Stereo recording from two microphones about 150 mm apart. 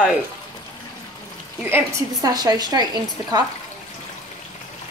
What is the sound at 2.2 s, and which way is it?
Speech, 25° right (ahead or behind).